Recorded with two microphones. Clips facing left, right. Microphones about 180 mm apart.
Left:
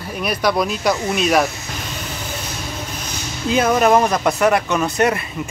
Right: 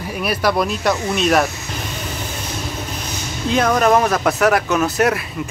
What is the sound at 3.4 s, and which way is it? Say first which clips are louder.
Speech: even; 5° left (ahead or behind).